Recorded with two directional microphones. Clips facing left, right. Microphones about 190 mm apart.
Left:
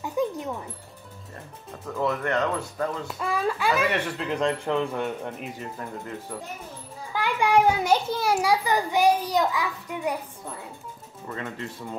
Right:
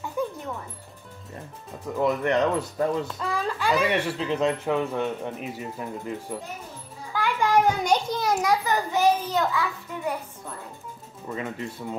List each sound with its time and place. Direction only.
0.0 s music: 15° left (ahead or behind)
2.0 s speech: 20° right (ahead or behind)
3.2 s speech: 10° left (ahead or behind)
3.8 s speech: 10° right (ahead or behind)
7.2 s a child's voice: 10° left (ahead or behind)
11.2 s speech: 10° right (ahead or behind)